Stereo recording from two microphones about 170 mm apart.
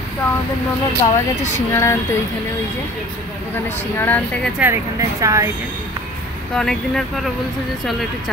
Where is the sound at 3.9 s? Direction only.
10° left (ahead or behind).